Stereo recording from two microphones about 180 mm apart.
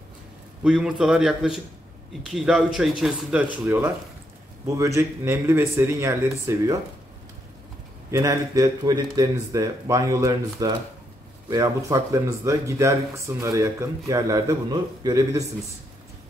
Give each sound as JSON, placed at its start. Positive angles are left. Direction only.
{"t": 0.7, "sound": "a man's voice", "side_deg": -5}
{"t": 8.1, "sound": "speech", "side_deg": -15}